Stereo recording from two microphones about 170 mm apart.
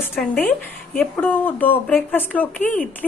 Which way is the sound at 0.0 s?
10° left (ahead or behind).